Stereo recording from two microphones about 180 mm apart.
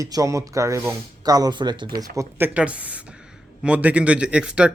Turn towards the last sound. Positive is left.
turn(degrees=-5)  # may be behind; listen again after turning